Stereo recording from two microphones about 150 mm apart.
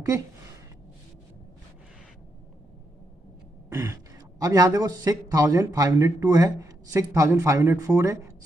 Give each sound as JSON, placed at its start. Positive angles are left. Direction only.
{"t": 3.7, "sound": "a man's voice", "side_deg": -20}